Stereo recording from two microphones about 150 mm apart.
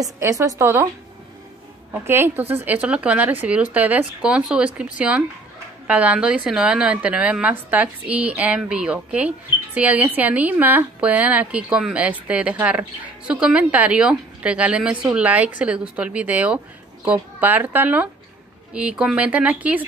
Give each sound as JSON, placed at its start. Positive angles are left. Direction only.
{"t": 0.0, "sound": "a woman's voice", "side_deg": -20}
{"t": 1.9, "sound": "a woman's voice", "side_deg": -15}